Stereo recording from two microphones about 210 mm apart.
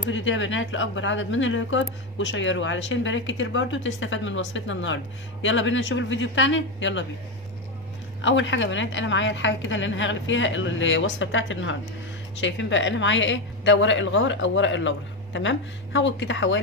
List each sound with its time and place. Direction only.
0.1 s a woman's voice: 65° left (ahead or behind)
8.2 s a woman's voice: 65° left (ahead or behind)